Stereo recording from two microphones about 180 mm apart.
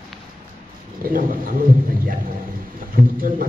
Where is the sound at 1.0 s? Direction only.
55° right (ahead or behind).